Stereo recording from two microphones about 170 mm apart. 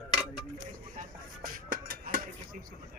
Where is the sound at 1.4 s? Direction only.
55° right (ahead or behind).